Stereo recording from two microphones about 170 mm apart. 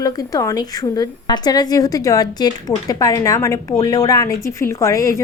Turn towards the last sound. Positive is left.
turn(degrees=20)  # may be behind; listen again after turning